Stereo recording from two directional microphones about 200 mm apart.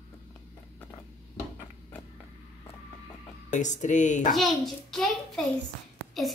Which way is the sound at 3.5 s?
35° left (ahead or behind).